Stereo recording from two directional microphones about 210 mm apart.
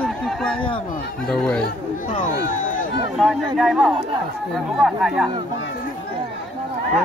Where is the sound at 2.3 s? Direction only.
40° left (ahead or behind).